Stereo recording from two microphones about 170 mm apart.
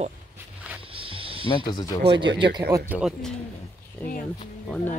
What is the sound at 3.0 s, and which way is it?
Speech, centre (ahead or behind).